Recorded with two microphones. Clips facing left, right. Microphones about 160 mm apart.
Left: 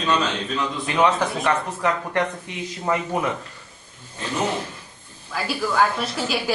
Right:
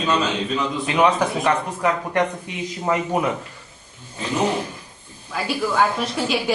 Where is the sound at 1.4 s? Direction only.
15° right (ahead or behind).